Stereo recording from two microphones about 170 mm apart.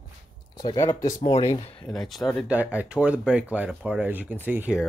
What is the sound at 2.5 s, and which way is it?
Speech, 10° right (ahead or behind).